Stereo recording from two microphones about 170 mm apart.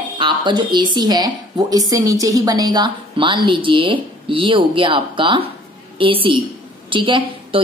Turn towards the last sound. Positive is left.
turn(degrees=-30)  # may be behind; listen again after turning